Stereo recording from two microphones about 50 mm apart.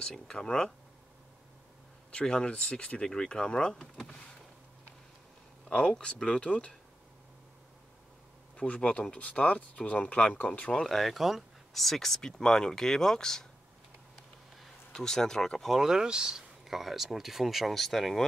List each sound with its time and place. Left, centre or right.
0.0 s speech: centre
2.0 s speech: centre
5.8 s speech: left
8.5 s speech: left
10.7 s speech: centre
14.6 s speech: centre
15.7 s speech: centre